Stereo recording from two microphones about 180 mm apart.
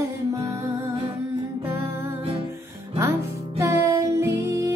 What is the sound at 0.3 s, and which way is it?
Music, 15° right (ahead or behind).